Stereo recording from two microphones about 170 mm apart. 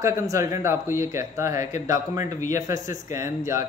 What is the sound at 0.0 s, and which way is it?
A man's voice, 15° right (ahead or behind).